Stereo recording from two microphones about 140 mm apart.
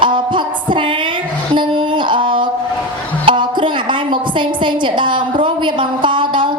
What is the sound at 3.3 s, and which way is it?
Music, 35° right (ahead or behind).